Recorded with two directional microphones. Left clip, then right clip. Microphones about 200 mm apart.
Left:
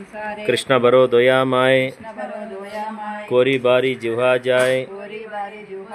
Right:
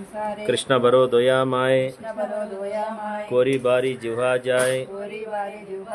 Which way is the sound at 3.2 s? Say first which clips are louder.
Left 4 dB; 35° left (ahead or behind).